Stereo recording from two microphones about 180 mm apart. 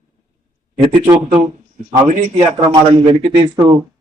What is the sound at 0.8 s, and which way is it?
Speech, 25° right (ahead or behind).